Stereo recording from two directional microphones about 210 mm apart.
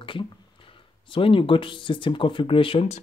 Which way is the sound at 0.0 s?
25° left (ahead or behind).